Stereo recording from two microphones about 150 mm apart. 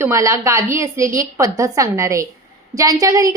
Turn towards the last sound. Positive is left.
turn(degrees=-20)  # may be behind; listen again after turning